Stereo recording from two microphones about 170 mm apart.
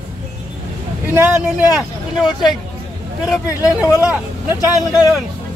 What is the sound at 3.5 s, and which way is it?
Speech, 20° left (ahead or behind).